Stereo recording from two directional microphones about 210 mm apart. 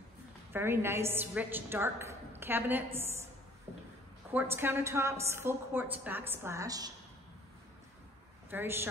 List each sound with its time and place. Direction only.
0.5 s a woman's voice: 10° right (ahead or behind)
4.3 s a woman's voice: 10° right (ahead or behind)
8.5 s a woman's voice: 10° right (ahead or behind)